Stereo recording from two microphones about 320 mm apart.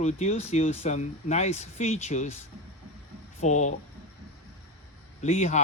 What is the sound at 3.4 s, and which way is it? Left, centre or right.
Speech, left.